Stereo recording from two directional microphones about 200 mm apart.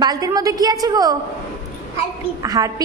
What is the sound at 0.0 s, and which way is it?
A woman's voice, 20° right (ahead or behind).